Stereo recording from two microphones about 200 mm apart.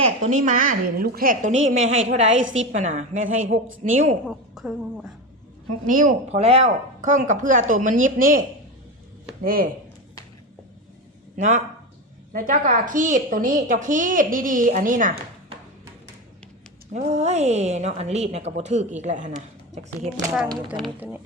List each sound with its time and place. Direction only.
0.0 s a woman's voice: 40° right (ahead or behind)
2.4 s a woman's voice: 75° right (ahead or behind)
2.7 s a woman's voice: 35° right (ahead or behind)
4.3 s a woman's voice: centre (ahead or behind)
5.9 s a woman's voice: 40° right (ahead or behind)
11.3 s a woman's voice: 40° right (ahead or behind)
16.9 s a woman's voice: 35° right (ahead or behind)
20.7 s a woman's voice: 5° right (ahead or behind)